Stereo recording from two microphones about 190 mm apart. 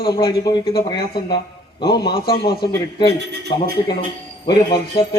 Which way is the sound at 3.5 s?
25° left (ahead or behind).